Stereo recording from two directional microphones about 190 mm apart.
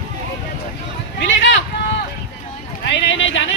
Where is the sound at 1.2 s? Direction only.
75° left (ahead or behind).